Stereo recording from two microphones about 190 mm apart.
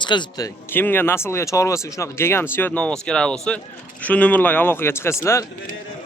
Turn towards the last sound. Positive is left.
turn(degrees=15)  # may be behind; listen again after turning